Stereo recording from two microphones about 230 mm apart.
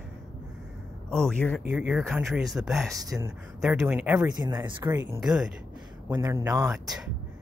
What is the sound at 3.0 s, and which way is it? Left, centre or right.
Speech, centre.